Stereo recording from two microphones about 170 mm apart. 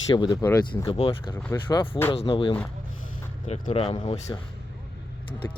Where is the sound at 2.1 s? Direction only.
30° left (ahead or behind).